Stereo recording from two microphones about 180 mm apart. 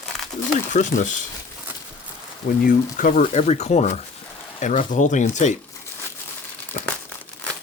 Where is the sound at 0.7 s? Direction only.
45° left (ahead or behind).